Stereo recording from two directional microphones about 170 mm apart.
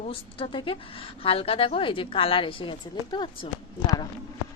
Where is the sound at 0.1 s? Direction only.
30° left (ahead or behind).